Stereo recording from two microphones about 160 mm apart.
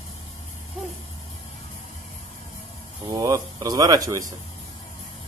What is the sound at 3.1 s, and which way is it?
Speech, 20° right (ahead or behind).